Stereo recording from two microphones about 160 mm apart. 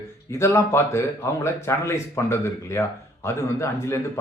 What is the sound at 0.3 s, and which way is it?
A man's voice, 15° left (ahead or behind).